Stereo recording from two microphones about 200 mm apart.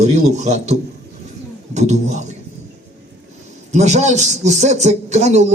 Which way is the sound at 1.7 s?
35° right (ahead or behind).